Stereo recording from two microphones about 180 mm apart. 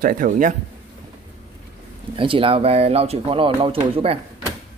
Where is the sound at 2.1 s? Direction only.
30° right (ahead or behind).